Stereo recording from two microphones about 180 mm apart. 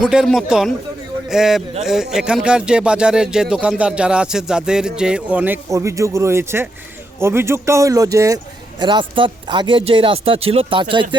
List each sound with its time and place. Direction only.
0.0 s speech: 5° right (ahead or behind); by 11.2 s 25° right (ahead or behind)